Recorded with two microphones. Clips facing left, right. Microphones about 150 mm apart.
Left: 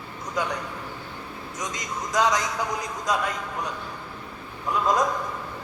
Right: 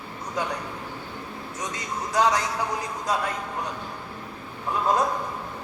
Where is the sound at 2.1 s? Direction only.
35° right (ahead or behind).